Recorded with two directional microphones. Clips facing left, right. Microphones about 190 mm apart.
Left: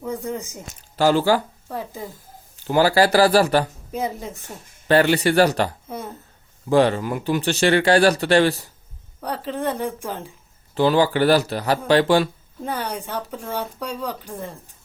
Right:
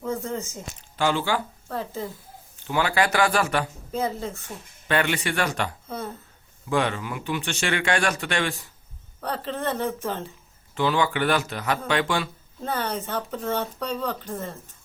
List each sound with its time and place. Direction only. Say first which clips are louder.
0.0 s speech: left 1 dB; 15° left (ahead or behind)
0.9 s a man's voice: left 7 dB; 40° left (ahead or behind)
1.6 s a woman's voice: even; 15° left (ahead or behind)
2.6 s a man's voice: left 7 dB; 35° left (ahead or behind)
3.9 s a woman's voice: even; 15° left (ahead or behind)
4.9 s a man's voice: left 8 dB; 35° left (ahead or behind)
9.2 s a woman's voice: left 3 dB; 10° left (ahead or behind)
10.8 s a man's voice: left 6 dB; 35° left (ahead or behind)
12.6 s a woman's voice: left 1 dB; 15° left (ahead or behind)